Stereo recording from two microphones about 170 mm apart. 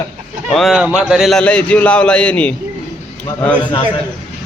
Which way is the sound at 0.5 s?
Centre (ahead or behind).